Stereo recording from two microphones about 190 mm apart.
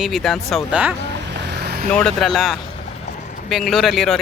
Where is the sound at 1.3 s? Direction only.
55° right (ahead or behind).